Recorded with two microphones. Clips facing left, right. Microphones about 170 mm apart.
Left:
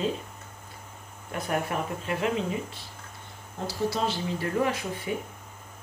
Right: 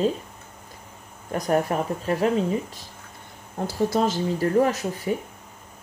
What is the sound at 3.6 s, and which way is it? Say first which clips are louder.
Speech: right 6 dB; 50° right (ahead or behind).